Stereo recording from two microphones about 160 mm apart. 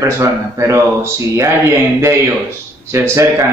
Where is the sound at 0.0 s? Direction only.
20° right (ahead or behind).